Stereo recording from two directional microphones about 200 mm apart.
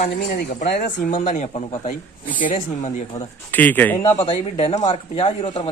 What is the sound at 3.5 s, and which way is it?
Speech, 10° left (ahead or behind).